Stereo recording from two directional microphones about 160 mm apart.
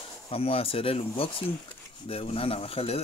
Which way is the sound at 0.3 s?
35° left (ahead or behind).